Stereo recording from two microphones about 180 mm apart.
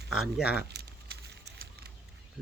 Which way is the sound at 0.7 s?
65° right (ahead or behind).